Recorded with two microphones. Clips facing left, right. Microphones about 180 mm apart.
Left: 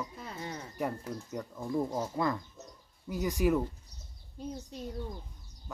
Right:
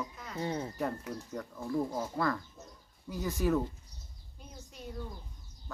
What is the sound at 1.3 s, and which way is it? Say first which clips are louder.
Speech: left 1 dB; 20° left (ahead or behind).